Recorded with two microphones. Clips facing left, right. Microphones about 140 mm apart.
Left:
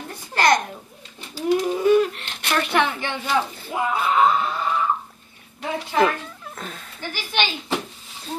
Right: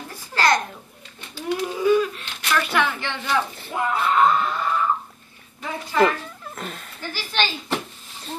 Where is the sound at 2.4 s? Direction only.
25° left (ahead or behind).